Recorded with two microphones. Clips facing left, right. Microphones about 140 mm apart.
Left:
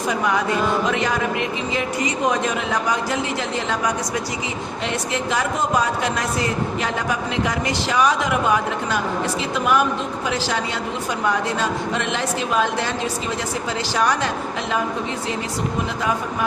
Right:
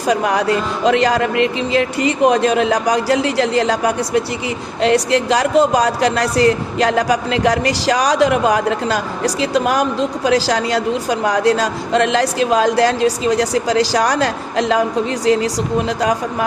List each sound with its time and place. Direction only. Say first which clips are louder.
0.1 s a woman's voice: right 6 dB; 80° right
4.8 s a woman's voice: right 12 dB; 90° right
16.0 s speech: right 5 dB; 85° right